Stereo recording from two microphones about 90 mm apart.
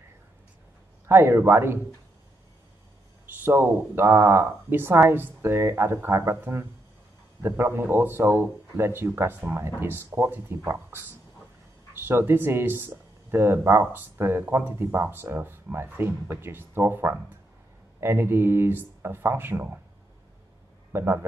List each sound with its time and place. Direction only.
1.0 s speech: 25° right (ahead or behind)
3.3 s speech: 25° right (ahead or behind)
20.9 s speech: 25° right (ahead or behind)